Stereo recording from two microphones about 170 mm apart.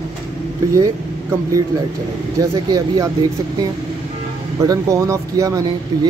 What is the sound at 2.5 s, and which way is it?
Speech, 25° right (ahead or behind).